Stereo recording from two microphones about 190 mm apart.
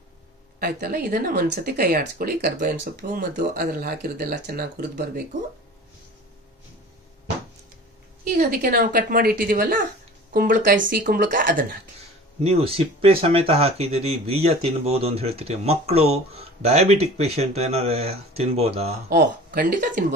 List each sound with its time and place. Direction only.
0.6 s speech: 55° right (ahead or behind)
8.2 s speech: 50° right (ahead or behind)
12.4 s speech: 30° right (ahead or behind)
19.0 s speech: 50° right (ahead or behind)